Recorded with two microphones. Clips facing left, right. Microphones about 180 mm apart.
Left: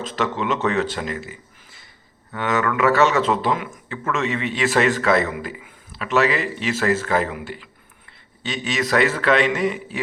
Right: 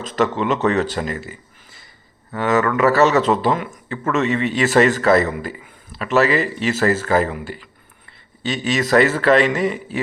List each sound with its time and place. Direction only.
0.2 s a man's voice: centre (ahead or behind)
0.5 s speech: 40° right (ahead or behind)
1.0 s a man's voice: centre (ahead or behind)
2.6 s speech: 40° right (ahead or behind)
2.8 s a man's voice: centre (ahead or behind)
3.8 s speech: 40° right (ahead or behind)
4.4 s a man's voice: centre (ahead or behind)